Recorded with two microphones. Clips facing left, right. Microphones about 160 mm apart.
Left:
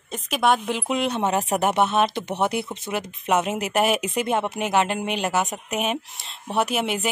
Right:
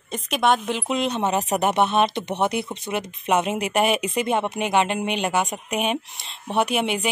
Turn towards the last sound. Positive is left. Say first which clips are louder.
# right 1 dB
turn(degrees=5)  # may be behind; listen again after turning